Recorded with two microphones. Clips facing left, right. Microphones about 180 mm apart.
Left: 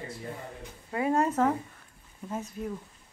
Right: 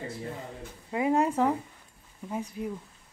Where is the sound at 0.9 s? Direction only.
15° right (ahead or behind).